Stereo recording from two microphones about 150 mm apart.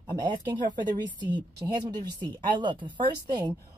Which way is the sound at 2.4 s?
30° right (ahead or behind).